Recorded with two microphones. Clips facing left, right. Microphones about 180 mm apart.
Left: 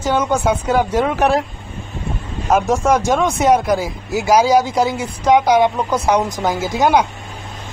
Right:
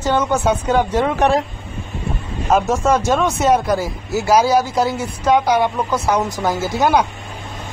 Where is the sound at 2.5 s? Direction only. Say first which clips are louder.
Left 1 dB; 10° left (ahead or behind).